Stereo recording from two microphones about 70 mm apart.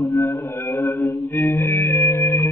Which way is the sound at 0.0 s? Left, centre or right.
Left.